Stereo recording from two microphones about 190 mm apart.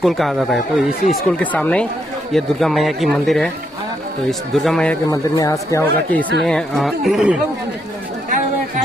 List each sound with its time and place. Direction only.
0.0 s speech: centre (ahead or behind)
5.1 s speech: 15° left (ahead or behind)
6.4 s speech: centre (ahead or behind)